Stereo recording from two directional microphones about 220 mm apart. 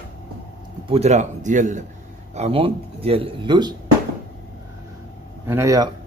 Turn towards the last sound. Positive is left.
turn(degrees=-15)  # may be behind; listen again after turning